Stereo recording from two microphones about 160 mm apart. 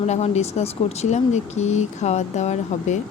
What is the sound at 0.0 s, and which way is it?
Speech, 45° left (ahead or behind).